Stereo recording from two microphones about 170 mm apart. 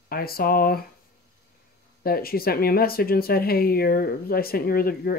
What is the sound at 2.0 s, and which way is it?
Speech, 60° left (ahead or behind).